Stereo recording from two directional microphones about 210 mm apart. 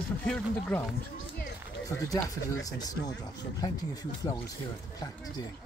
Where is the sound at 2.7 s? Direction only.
20° left (ahead or behind).